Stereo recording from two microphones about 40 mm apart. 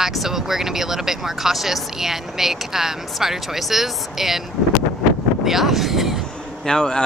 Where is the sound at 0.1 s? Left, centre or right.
Centre.